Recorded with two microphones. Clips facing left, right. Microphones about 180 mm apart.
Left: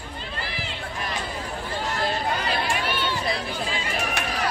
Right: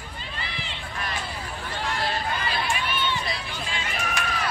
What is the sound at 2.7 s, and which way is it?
Run, 75° left (ahead or behind).